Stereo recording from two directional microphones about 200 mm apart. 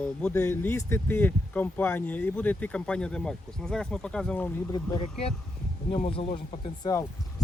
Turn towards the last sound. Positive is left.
turn(degrees=15)  # may be behind; listen again after turning